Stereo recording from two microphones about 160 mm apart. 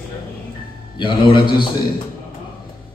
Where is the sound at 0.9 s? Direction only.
30° left (ahead or behind).